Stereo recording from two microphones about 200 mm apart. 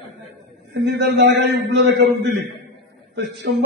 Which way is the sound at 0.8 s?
60° right (ahead or behind).